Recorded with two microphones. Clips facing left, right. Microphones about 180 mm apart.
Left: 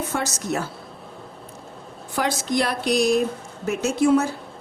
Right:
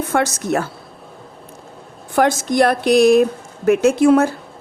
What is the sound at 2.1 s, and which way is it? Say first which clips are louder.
A woman's voice: right 8 dB; 50° right (ahead or behind).